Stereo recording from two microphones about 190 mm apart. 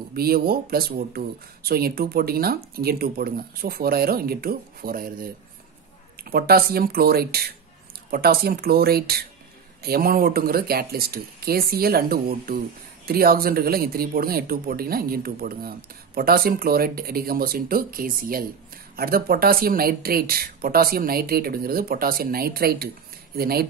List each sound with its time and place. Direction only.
0.1 s speech: 55° right (ahead or behind)
6.1 s speech: 50° right (ahead or behind)